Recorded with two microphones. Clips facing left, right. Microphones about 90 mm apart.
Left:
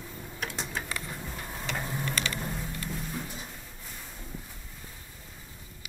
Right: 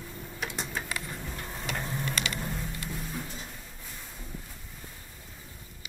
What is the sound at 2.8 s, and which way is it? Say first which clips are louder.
Music: left 1 dB; centre (ahead or behind).